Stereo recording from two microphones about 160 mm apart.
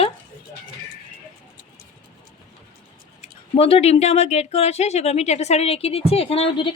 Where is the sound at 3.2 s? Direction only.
35° left (ahead or behind).